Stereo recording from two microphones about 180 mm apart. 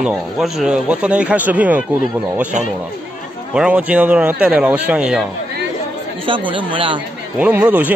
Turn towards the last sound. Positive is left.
turn(degrees=-10)  # may be behind; listen again after turning